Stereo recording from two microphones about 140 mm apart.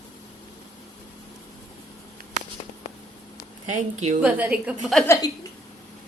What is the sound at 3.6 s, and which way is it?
Speech, 60° right (ahead or behind).